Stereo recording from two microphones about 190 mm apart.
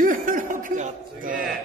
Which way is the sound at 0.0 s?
45° right (ahead or behind).